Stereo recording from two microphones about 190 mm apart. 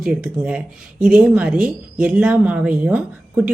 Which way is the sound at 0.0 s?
5° right (ahead or behind).